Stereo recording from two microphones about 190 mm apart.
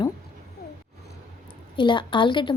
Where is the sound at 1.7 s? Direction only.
25° left (ahead or behind).